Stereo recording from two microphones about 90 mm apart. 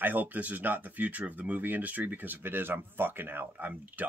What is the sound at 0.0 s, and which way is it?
Speech, 20° right (ahead or behind).